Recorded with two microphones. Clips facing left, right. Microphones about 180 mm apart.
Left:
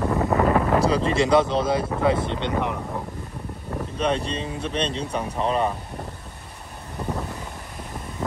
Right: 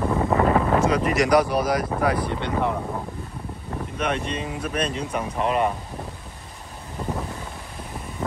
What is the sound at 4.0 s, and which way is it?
Speech, 30° left (ahead or behind).